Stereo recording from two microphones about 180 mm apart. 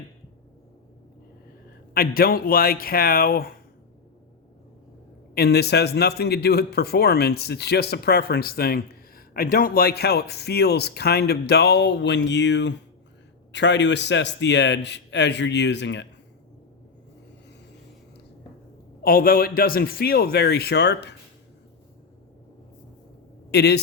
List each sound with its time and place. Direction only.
1.9 s a man's voice: 55° left (ahead or behind)
5.3 s a man's voice: 60° left (ahead or behind); by 16.0 s 75° left (ahead or behind)
19.0 s a man's voice: 55° left (ahead or behind); by 21.2 s 70° left (ahead or behind)
23.5 s a man's voice: 65° left (ahead or behind)